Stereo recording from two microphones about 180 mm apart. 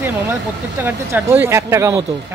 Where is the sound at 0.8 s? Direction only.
15° right (ahead or behind).